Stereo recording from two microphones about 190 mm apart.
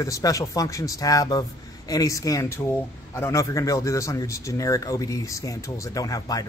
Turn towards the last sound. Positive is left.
turn(degrees=20)  # may be behind; listen again after turning